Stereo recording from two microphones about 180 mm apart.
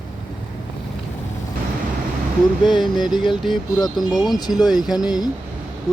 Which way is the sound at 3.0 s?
25° left (ahead or behind).